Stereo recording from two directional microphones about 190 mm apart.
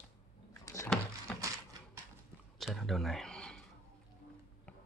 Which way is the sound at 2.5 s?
Centre (ahead or behind).